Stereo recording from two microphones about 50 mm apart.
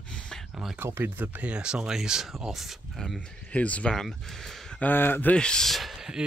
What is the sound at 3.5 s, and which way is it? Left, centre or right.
Speech, left.